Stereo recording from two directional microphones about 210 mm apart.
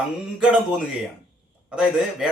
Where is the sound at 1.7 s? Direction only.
5° right (ahead or behind).